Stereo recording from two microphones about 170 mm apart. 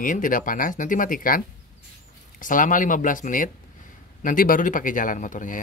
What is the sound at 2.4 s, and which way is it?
Speech, 50° left (ahead or behind).